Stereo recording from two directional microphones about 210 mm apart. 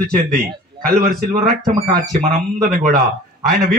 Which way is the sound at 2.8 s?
45° right (ahead or behind).